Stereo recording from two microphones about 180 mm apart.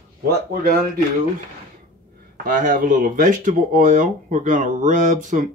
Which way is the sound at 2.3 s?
50° right (ahead or behind).